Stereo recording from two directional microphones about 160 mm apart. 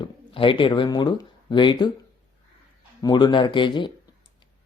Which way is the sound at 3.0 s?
30° left (ahead or behind).